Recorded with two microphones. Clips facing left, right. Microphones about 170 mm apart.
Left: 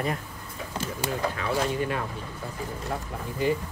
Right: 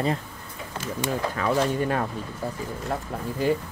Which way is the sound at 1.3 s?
45° right (ahead or behind).